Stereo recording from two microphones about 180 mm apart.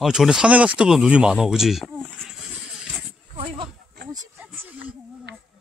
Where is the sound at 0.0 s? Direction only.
Centre (ahead or behind).